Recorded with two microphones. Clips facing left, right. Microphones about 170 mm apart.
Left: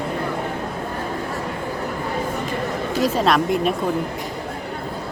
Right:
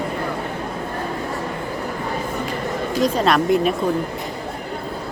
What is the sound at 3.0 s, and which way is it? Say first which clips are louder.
Speech: right 1 dB; centre (ahead or behind).